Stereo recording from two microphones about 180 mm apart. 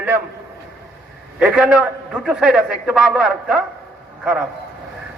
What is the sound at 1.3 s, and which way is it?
A man's voice, 5° right (ahead or behind).